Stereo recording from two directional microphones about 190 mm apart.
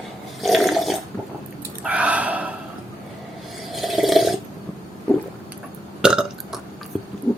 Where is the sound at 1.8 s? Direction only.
5° right (ahead or behind).